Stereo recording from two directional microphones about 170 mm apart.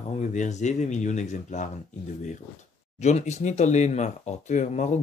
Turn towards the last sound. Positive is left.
turn(degrees=45)  # may be behind; listen again after turning